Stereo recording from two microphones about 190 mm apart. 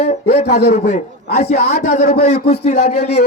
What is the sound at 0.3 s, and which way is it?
Speech, 60° left (ahead or behind).